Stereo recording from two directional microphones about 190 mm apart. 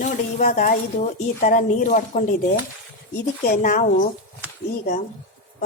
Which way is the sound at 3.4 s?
50° left (ahead or behind).